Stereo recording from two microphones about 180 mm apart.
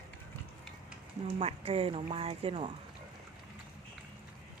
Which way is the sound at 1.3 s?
30° right (ahead or behind).